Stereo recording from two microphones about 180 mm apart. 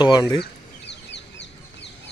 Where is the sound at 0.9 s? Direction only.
75° left (ahead or behind).